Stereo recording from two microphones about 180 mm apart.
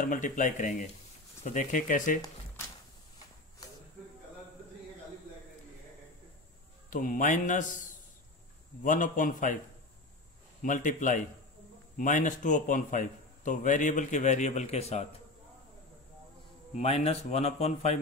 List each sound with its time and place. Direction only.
0.0 s a man's voice: 45° left (ahead or behind)
6.9 s a man's voice: 50° left (ahead or behind)
10.6 s a man's voice: 45° left (ahead or behind)
16.7 s speech: 35° left (ahead or behind)